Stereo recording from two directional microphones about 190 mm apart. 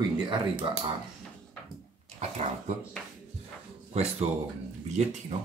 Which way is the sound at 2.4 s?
35° right (ahead or behind).